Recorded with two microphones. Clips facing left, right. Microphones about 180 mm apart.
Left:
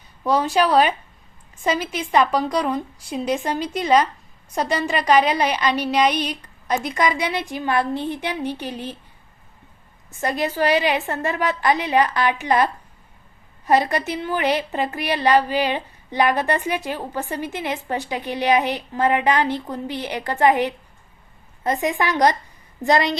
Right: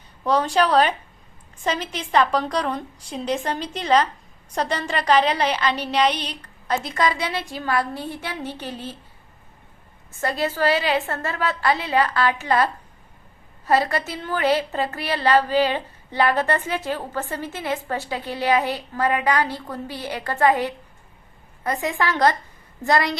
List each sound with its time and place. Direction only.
0.3 s a woman's voice: 10° left (ahead or behind)
10.1 s a woman's voice: 20° left (ahead or behind)